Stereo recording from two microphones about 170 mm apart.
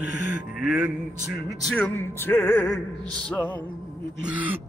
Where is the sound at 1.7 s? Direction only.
10° left (ahead or behind).